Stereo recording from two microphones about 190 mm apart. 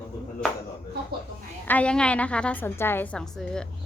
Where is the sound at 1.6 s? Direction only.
10° left (ahead or behind).